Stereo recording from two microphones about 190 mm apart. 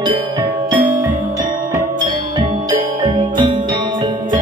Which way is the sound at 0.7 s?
45° right (ahead or behind).